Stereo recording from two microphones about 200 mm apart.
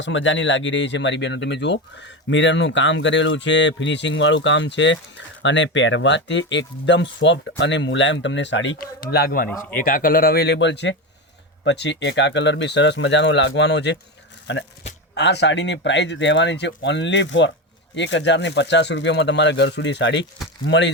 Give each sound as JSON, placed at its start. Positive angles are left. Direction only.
{"t": 0.0, "sound": "speech", "side_deg": 70}
{"t": 8.8, "sound": "speech", "side_deg": 50}
{"t": 9.5, "sound": "speech", "side_deg": 5}
{"t": 9.7, "sound": "speech", "side_deg": 45}